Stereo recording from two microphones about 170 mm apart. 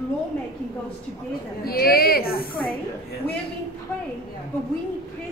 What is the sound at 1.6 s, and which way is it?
A woman's voice, 60° left (ahead or behind).